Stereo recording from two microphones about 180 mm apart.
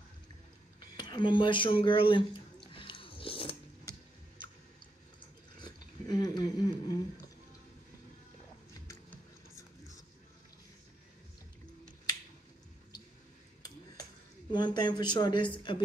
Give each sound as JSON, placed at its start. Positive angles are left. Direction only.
{"t": 0.9, "sound": "a sound", "side_deg": 25}
{"t": 5.6, "sound": "speech", "side_deg": 20}
{"t": 8.8, "sound": "music", "side_deg": 15}
{"t": 14.5, "sound": "speech", "side_deg": 25}